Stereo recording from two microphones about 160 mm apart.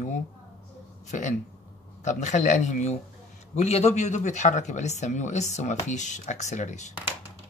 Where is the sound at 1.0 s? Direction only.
50° left (ahead or behind).